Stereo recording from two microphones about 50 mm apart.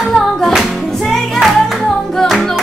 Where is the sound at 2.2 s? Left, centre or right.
Centre.